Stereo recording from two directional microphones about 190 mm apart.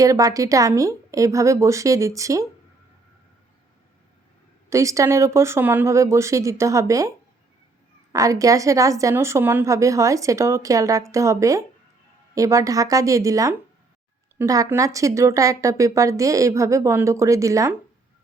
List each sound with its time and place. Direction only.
0.0 s a woman's voice: 15° right (ahead or behind)
4.7 s a woman's voice: 15° right (ahead or behind)
8.1 s a woman's voice: 15° right (ahead or behind)